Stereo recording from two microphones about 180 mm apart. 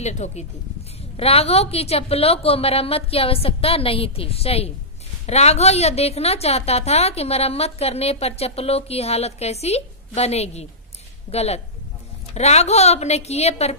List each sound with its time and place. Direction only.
0.0 s a woman's voice: 40° left (ahead or behind)